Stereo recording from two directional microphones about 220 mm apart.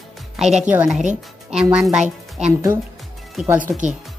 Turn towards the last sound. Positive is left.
turn(degrees=-35)  # may be behind; listen again after turning